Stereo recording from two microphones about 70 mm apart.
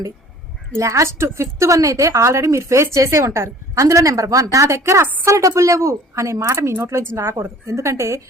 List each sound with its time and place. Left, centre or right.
0.8 s a woman's voice: right